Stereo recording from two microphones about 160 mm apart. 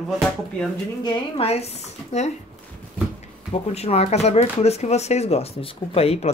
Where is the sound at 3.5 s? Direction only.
40° left (ahead or behind).